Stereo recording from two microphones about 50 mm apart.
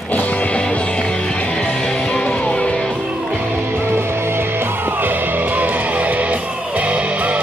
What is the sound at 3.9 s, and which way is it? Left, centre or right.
Music, right.